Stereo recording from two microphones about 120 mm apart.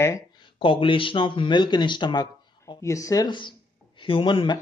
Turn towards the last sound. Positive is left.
turn(degrees=45)  # may be behind; listen again after turning